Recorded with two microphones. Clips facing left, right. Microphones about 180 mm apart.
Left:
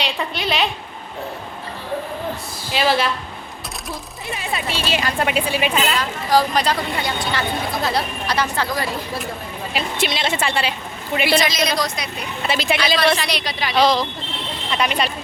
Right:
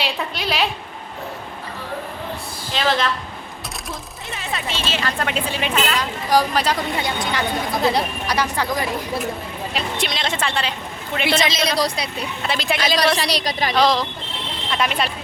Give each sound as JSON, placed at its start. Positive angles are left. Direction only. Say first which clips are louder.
{"t": 0.0, "sound": "a woman's voice", "louder": "left 1 dB", "side_deg": 0}
{"t": 2.7, "sound": "speech", "louder": "left 2 dB", "side_deg": 10}
{"t": 4.4, "sound": "speech", "louder": "left 1 dB", "side_deg": 10}
{"t": 6.0, "sound": "speech", "louder": "even", "side_deg": -10}
{"t": 7.0, "sound": "speech", "louder": "even", "side_deg": -20}
{"t": 9.7, "sound": "speech", "louder": "left 3 dB", "side_deg": 5}
{"t": 11.3, "sound": "a woman's voice", "louder": "even", "side_deg": -25}
{"t": 12.5, "sound": "a woman's voice", "louder": "left 3 dB", "side_deg": 0}
{"t": 13.1, "sound": "a woman's voice", "louder": "right 2 dB", "side_deg": -35}
{"t": 13.7, "sound": "a woman's voice", "louder": "left 2 dB", "side_deg": 0}